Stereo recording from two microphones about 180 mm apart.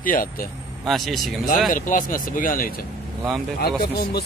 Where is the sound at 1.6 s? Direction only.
45° left (ahead or behind).